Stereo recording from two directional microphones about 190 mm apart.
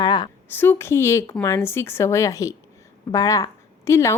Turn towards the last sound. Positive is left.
turn(degrees=15)  # may be behind; listen again after turning